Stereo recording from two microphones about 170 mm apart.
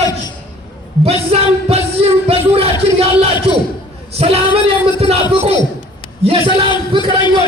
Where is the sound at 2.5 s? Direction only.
35° right (ahead or behind).